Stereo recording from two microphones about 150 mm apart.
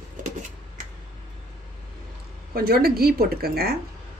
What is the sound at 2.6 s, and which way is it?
A woman's voice, 90° right.